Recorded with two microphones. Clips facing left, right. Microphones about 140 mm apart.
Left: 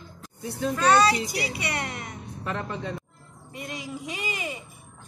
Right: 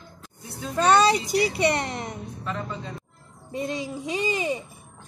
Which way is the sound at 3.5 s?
30° right (ahead or behind).